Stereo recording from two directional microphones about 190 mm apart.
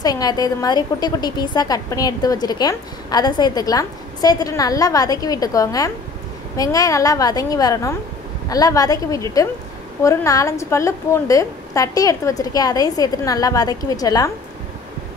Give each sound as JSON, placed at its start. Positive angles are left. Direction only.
{"t": 0.0, "sound": "a woman's voice", "side_deg": 20}